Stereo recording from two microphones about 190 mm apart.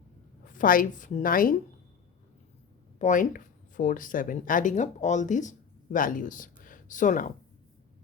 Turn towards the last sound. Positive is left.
turn(degrees=40)  # may be behind; listen again after turning